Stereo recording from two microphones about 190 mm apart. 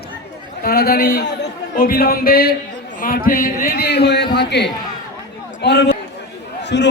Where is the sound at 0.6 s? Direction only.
55° left (ahead or behind).